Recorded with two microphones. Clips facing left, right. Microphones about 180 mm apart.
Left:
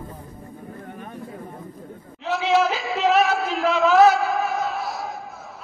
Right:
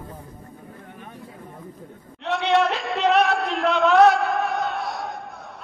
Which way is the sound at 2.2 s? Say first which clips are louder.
Even; centre (ahead or behind).